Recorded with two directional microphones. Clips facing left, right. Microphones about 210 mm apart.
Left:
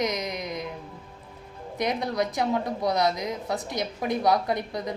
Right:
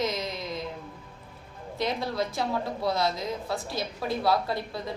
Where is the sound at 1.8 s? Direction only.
15° left (ahead or behind).